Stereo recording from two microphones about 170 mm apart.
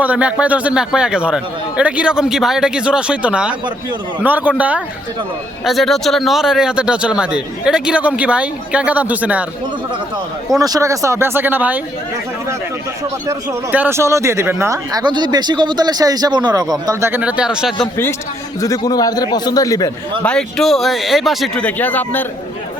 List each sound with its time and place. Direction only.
0.0 s a man's voice: 10° right (ahead or behind)
10.6 s speech: 20° right (ahead or behind)
13.2 s speech: 10° right (ahead or behind)
18.6 s a man's voice: 20° left (ahead or behind)
20.2 s a man's voice: 5° left (ahead or behind)